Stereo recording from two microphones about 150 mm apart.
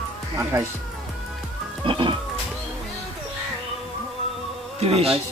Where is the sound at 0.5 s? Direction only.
20° right (ahead or behind).